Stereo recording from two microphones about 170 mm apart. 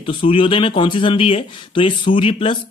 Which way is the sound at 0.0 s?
30° left (ahead or behind).